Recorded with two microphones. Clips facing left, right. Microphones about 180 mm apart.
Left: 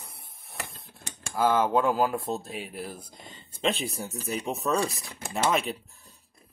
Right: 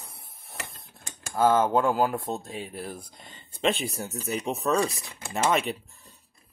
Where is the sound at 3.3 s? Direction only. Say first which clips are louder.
Right 2 dB; centre (ahead or behind).